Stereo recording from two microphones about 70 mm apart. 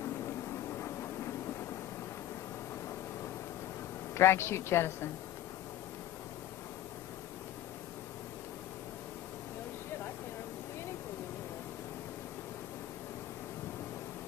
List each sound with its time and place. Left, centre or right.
4.1 s a woman's voice: left